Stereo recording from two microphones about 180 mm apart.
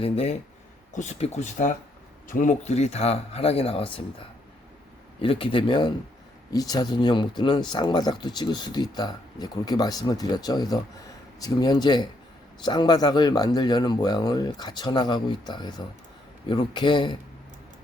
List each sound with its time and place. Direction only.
0.0 s a man's voice: 35° left (ahead or behind)
5.2 s speech: 30° left (ahead or behind)